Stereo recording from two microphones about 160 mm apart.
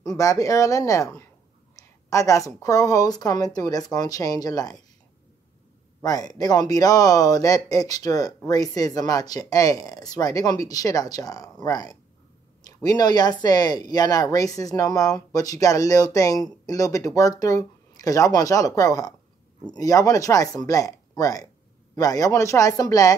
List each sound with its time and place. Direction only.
0.2 s speech: 20° left (ahead or behind)
6.0 s speech: 25° left (ahead or behind)